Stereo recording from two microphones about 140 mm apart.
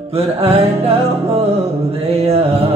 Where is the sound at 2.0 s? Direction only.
45° right (ahead or behind).